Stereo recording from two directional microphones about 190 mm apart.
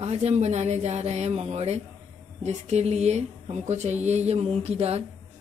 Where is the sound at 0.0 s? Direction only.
35° right (ahead or behind).